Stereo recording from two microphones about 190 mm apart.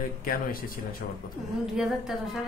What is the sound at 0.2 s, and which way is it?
Speech, 50° left (ahead or behind).